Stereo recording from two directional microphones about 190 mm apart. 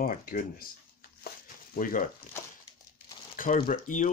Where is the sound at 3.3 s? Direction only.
45° left (ahead or behind).